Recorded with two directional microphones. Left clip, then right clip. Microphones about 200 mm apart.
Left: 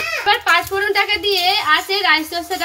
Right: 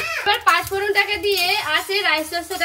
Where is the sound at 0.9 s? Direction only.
40° left (ahead or behind).